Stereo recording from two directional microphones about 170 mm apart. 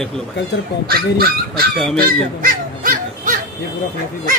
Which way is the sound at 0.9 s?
60° right (ahead or behind).